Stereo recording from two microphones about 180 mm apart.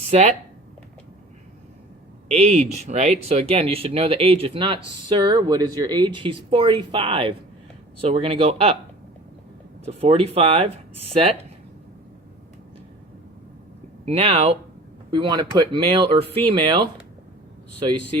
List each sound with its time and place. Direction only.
0.1 s speech: 35° right (ahead or behind)
2.3 s speech: 35° right (ahead or behind)
9.8 s speech: 30° right (ahead or behind)
14.0 s speech: 35° right (ahead or behind)